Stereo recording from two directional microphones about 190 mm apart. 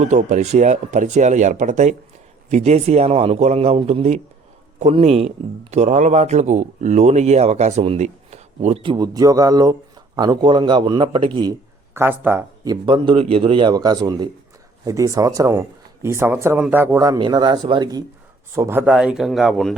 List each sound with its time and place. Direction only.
0.0 s speech: 40° right (ahead or behind)
11.9 s speech: 10° right (ahead or behind)